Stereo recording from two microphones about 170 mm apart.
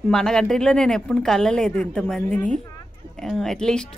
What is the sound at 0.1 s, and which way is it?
Speech, 5° left (ahead or behind).